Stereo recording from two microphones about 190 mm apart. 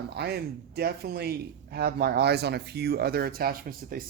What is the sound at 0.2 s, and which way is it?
A man's voice, 55° right (ahead or behind).